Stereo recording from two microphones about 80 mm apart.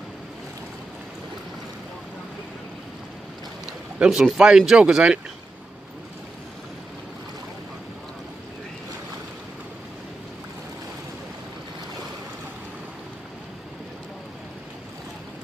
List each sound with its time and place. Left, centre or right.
4.0 s speech: centre